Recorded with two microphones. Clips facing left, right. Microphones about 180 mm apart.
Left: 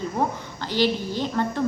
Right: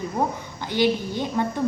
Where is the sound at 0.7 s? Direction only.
55° right (ahead or behind).